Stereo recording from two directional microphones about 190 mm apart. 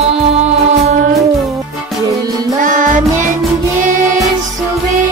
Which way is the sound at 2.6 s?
45° right (ahead or behind).